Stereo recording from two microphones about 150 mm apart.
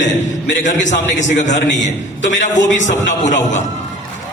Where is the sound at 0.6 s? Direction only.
55° left (ahead or behind).